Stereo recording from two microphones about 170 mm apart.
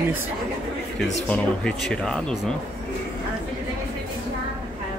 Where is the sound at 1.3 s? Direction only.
5° left (ahead or behind).